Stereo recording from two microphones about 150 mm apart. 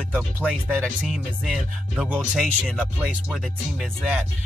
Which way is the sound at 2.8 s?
5° right (ahead or behind).